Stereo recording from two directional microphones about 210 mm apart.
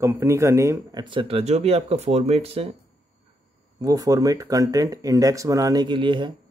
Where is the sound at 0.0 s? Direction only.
10° right (ahead or behind); by 2.7 s 30° right (ahead or behind).